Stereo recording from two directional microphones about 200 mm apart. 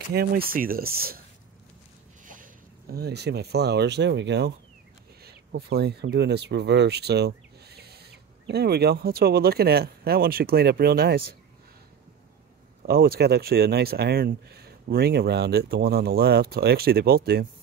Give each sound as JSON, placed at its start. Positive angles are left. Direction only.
{"t": 0.1, "sound": "speech", "side_deg": -50}
{"t": 2.2, "sound": "speech", "side_deg": -40}
{"t": 12.8, "sound": "speech", "side_deg": -50}